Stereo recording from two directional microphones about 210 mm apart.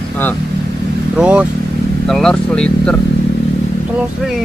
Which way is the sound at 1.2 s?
5° right (ahead or behind).